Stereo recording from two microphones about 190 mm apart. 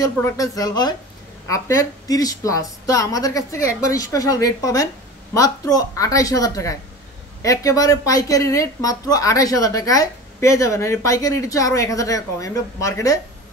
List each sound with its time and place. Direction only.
0.0 s a woman's voice: 20° left (ahead or behind)